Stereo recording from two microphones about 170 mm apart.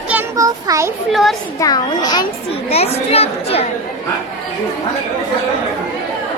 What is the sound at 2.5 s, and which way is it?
A woman's voice, 35° left (ahead or behind).